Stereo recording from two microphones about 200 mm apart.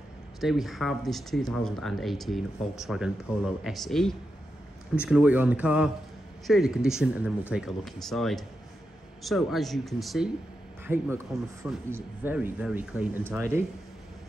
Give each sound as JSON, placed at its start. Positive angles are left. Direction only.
{"t": 0.4, "sound": "speech", "side_deg": 0}